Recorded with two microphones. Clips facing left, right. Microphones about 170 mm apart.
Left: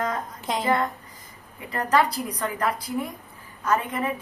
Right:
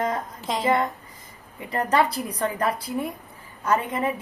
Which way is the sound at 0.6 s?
25° right (ahead or behind).